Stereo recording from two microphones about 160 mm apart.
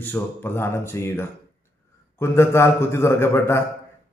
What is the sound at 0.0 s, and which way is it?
A man's voice, 10° left (ahead or behind).